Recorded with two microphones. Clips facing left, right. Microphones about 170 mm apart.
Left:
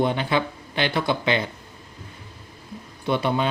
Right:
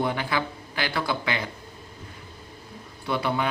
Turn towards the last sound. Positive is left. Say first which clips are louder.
# left 4 dB
turn(degrees=20)  # may be behind; listen again after turning